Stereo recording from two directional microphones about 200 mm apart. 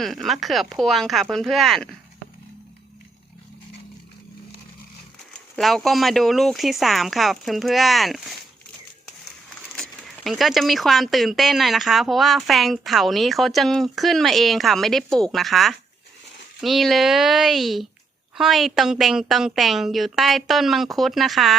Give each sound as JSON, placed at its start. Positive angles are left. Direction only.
{"t": 0.0, "sound": "speech", "side_deg": 0}
{"t": 5.3, "sound": "speech", "side_deg": 0}
{"t": 9.7, "sound": "speech", "side_deg": 0}